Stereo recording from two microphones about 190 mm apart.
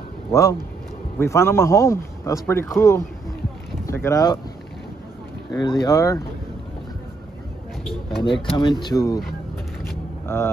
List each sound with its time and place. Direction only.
0.3 s speech: 15° left (ahead or behind)
5.5 s speech: 20° left (ahead or behind)
8.2 s speech: 25° left (ahead or behind)
10.2 s speech: 15° left (ahead or behind)